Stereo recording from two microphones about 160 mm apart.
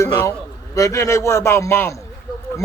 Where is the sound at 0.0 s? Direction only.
15° left (ahead or behind).